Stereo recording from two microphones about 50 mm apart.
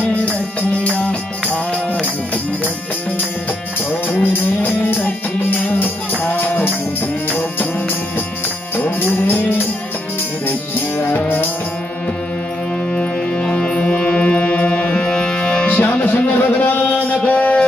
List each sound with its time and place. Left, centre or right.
0.1 s music: left
4.2 s music: left
8.7 s music: left
11.1 s music: left
12.9 s music: centre
15.8 s music: left
17.2 s music: left